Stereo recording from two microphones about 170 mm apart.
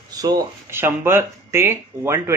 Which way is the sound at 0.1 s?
20° right (ahead or behind).